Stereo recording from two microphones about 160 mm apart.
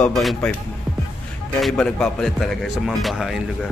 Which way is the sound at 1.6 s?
5° left (ahead or behind).